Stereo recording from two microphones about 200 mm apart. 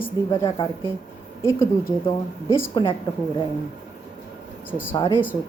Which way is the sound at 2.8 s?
20° left (ahead or behind).